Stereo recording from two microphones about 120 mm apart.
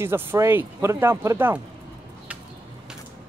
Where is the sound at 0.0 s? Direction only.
20° right (ahead or behind).